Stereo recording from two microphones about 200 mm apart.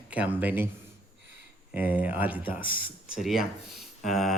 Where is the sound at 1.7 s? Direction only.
10° right (ahead or behind).